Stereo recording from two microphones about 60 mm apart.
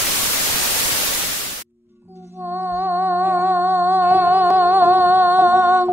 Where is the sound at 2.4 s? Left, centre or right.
Right.